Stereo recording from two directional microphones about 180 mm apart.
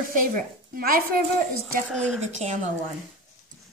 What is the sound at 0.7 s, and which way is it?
Speech, 55° right (ahead or behind).